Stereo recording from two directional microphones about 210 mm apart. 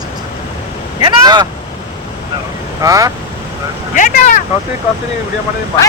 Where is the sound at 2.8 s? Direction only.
15° right (ahead or behind).